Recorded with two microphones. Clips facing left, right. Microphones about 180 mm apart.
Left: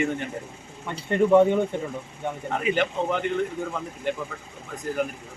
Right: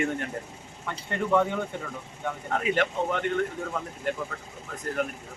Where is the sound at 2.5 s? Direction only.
Centre (ahead or behind).